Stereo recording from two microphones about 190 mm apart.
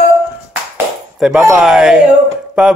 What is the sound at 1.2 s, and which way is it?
Speech, centre (ahead or behind).